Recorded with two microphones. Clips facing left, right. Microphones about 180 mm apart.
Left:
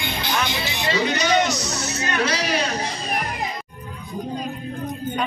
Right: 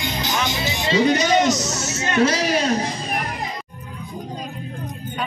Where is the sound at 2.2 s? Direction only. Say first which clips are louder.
Right 6 dB; 45° right (ahead or behind).